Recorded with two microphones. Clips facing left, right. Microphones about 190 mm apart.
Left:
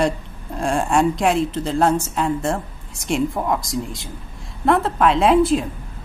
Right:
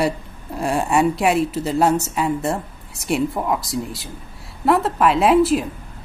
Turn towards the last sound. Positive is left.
turn(degrees=-5)  # may be behind; listen again after turning